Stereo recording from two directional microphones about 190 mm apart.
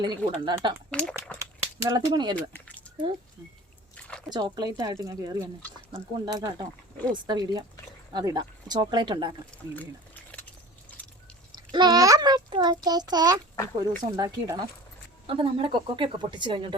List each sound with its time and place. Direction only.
0.0 s speech: 20° right (ahead or behind)
0.9 s speech: 5° left (ahead or behind)
1.9 s speech: 20° right (ahead or behind)
4.4 s speech: 20° right (ahead or behind)
11.5 s a child's voice: 20° right (ahead or behind)